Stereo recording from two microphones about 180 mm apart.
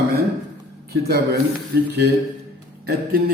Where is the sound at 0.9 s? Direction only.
65° right (ahead or behind).